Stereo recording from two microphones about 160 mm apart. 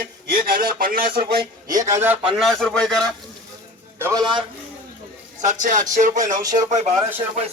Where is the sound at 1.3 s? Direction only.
75° right (ahead or behind).